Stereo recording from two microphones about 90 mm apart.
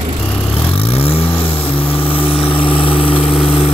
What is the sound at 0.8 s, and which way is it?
Vehicle, 90° left.